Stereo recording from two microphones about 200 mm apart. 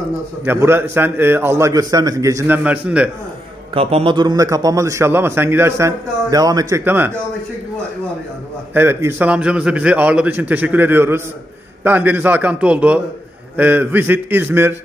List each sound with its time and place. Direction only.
0.4 s a man's voice: 10° right (ahead or behind)
3.7 s a man's voice: 30° right (ahead or behind); by 7.1 s 10° right (ahead or behind)
8.7 s a man's voice: 10° right (ahead or behind)